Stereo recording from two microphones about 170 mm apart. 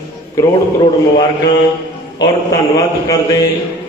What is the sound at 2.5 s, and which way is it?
Speech, 20° left (ahead or behind).